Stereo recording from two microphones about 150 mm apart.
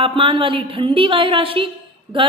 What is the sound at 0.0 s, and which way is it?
A woman's voice, 35° right (ahead or behind).